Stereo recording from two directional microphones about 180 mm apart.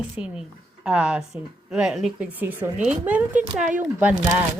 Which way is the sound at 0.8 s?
5° right (ahead or behind).